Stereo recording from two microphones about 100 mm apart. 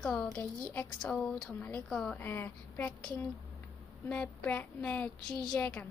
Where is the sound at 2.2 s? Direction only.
20° left (ahead or behind).